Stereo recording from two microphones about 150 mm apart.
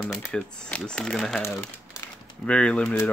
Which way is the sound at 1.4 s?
20° left (ahead or behind).